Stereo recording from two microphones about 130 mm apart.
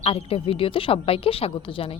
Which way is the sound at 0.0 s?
50° left (ahead or behind).